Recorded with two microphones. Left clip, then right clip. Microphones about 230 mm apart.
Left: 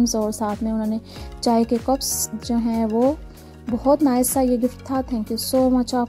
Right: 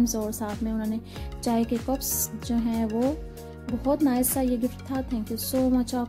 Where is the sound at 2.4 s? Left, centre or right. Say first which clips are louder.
Left 5 dB; left.